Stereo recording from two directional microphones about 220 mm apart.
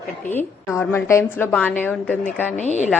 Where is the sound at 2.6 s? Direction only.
30° left (ahead or behind).